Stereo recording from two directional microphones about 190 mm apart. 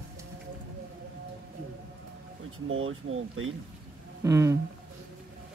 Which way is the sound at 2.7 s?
90° right.